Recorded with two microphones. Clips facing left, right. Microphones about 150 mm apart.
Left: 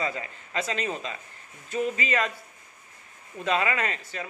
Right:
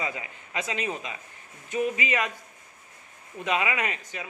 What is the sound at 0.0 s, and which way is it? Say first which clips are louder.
A man's voice: left 2 dB; 15° right (ahead or behind).